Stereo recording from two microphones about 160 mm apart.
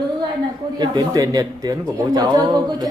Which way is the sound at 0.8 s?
20° right (ahead or behind).